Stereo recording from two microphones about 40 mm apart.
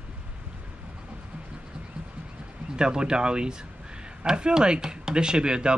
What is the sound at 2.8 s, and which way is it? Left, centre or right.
Speech, right.